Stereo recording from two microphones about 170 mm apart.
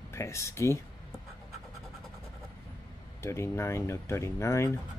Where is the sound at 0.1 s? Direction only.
15° left (ahead or behind).